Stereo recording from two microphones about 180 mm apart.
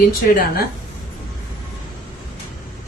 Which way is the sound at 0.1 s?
55° left (ahead or behind).